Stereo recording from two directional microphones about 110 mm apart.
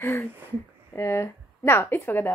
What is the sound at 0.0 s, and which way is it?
Speech, 20° left (ahead or behind).